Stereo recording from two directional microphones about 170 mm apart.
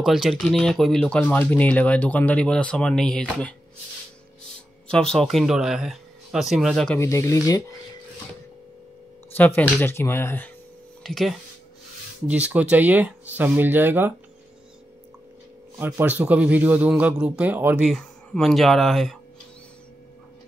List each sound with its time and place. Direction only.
0.0 s speech: centre (ahead or behind)
7.0 s speech: 15° left (ahead or behind)
9.6 s speech: 15° left (ahead or behind)
11.1 s speech: centre (ahead or behind)
15.8 s speech: 10° right (ahead or behind)